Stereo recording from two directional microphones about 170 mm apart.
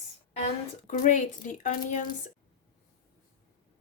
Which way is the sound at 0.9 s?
45° left (ahead or behind).